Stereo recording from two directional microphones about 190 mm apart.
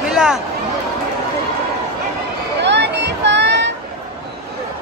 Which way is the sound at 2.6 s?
65° right (ahead or behind).